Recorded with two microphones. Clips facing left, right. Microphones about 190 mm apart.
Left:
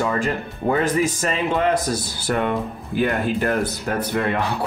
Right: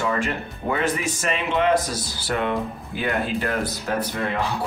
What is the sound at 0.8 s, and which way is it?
Speech, 35° left (ahead or behind).